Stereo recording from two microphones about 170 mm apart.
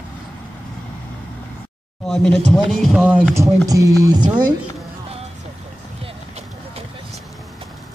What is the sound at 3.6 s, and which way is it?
Speech, 20° right (ahead or behind).